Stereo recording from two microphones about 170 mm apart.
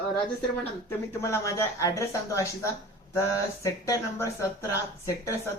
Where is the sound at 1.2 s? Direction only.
15° left (ahead or behind).